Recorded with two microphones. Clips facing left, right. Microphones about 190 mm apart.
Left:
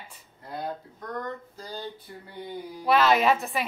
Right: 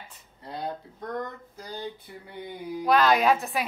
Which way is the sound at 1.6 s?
15° right (ahead or behind).